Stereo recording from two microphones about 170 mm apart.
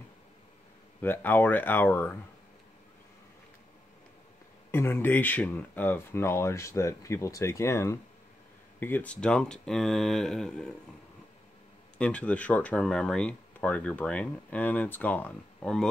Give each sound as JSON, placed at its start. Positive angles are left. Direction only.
{"t": 1.0, "sound": "speech", "side_deg": 10}
{"t": 4.6, "sound": "speech", "side_deg": 15}
{"t": 12.0, "sound": "speech", "side_deg": 10}